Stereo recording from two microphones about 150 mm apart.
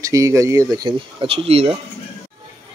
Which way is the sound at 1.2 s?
40° right (ahead or behind).